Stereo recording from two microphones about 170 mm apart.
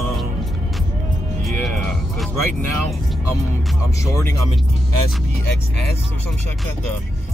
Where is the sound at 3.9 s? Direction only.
15° left (ahead or behind).